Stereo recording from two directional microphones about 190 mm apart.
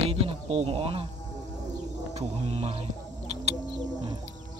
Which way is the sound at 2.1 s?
35° right (ahead or behind).